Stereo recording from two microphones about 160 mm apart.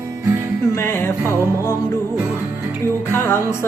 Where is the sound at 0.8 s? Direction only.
15° left (ahead or behind).